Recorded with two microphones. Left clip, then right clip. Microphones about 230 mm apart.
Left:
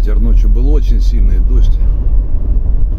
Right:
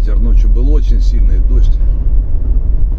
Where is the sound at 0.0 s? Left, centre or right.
Left.